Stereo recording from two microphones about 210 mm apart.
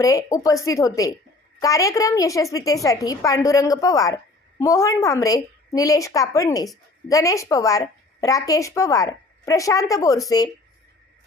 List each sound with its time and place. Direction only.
0.0 s a woman's voice: 15° left (ahead or behind)